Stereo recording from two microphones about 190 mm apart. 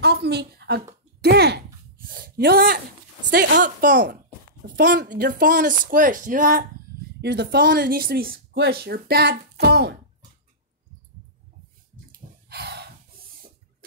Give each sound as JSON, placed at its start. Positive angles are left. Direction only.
{"t": 0.0, "sound": "a sound", "side_deg": -60}
{"t": 3.9, "sound": "speech", "side_deg": -60}
{"t": 4.6, "sound": "a woman's voice", "side_deg": -50}
{"t": 7.2, "sound": "speech", "side_deg": -60}
{"t": 12.1, "sound": "snort", "side_deg": -55}